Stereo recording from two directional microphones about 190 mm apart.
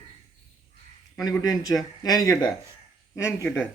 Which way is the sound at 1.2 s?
20° left (ahead or behind).